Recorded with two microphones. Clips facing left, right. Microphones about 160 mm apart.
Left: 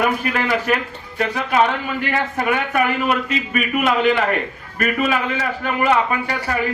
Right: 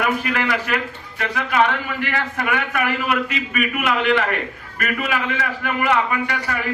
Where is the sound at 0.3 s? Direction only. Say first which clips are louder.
Left 3 dB; 30° left (ahead or behind).